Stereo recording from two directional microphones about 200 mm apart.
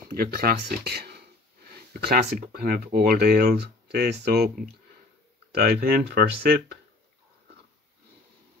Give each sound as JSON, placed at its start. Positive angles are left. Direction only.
{"t": 0.1, "sound": "speech", "side_deg": -50}